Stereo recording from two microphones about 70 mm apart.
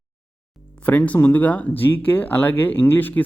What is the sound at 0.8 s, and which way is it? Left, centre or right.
Speech, left.